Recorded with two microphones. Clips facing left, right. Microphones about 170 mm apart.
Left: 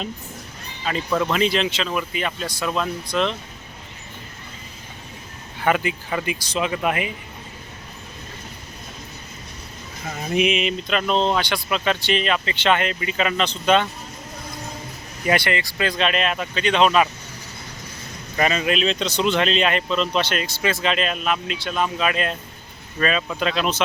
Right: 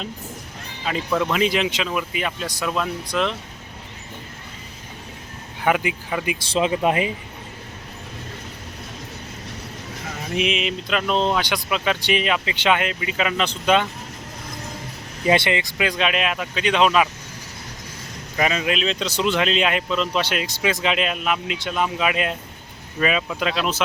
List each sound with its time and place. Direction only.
0.9 s speech: 5° right (ahead or behind)
5.6 s speech: 10° right (ahead or behind)
6.4 s speech: 30° right (ahead or behind)
10.3 s a sound: centre (ahead or behind)
11.3 s speech: 10° right (ahead or behind)
15.3 s speech: 20° right (ahead or behind); by 17.1 s 5° right (ahead or behind)
18.3 s speech: centre (ahead or behind)